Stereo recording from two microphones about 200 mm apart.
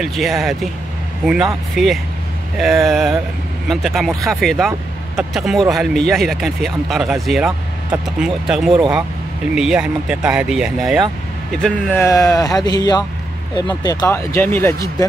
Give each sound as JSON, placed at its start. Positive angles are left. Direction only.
{"t": 0.0, "sound": "speech", "side_deg": 0}